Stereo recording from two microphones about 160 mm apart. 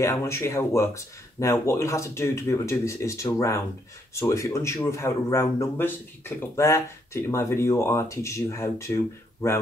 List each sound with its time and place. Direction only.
0.0 s speech: 20° left (ahead or behind)